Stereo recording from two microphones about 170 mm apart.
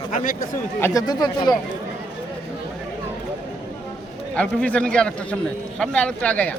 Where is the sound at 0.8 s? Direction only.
20° left (ahead or behind).